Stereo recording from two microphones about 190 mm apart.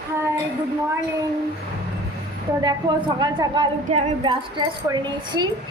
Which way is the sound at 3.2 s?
25° right (ahead or behind).